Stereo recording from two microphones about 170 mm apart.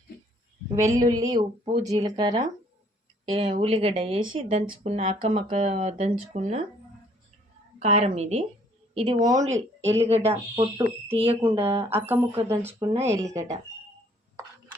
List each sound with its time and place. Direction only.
0.9 s speech: 20° right (ahead or behind); by 6.6 s 40° right (ahead or behind)
7.8 s speech: 35° right (ahead or behind)
9.0 s speech: 25° right (ahead or behind)
9.3 s speech: 45° right (ahead or behind)
10.5 s speech: 25° right (ahead or behind)
11.1 s speech: 35° right (ahead or behind)
12.0 s speech: 15° right (ahead or behind)